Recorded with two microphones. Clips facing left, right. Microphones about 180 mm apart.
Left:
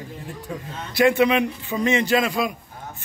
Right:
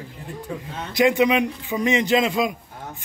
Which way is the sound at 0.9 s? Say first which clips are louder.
Even; 15° right (ahead or behind).